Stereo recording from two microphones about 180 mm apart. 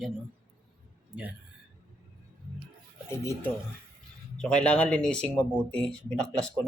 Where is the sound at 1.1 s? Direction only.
5° right (ahead or behind).